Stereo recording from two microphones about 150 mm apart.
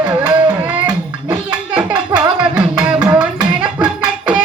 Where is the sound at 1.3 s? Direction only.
30° right (ahead or behind).